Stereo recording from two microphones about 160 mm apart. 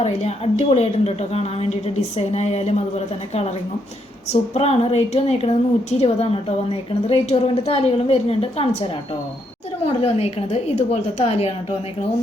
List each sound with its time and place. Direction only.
0.0 s a woman's voice: 45° left (ahead or behind)